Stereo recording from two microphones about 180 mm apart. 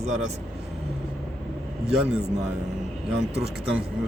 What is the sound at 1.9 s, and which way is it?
Speech, 5° right (ahead or behind).